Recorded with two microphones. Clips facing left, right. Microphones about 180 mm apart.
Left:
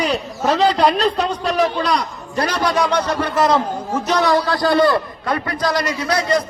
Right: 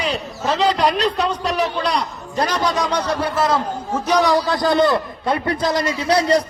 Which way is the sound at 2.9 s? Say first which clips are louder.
Left 1 dB; 5° right (ahead or behind).